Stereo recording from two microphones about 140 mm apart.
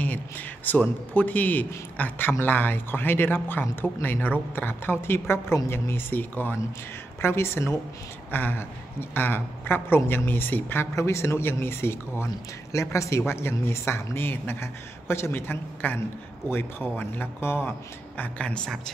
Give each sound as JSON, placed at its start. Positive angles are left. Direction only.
{"t": 0.0, "sound": "a man's voice", "side_deg": 10}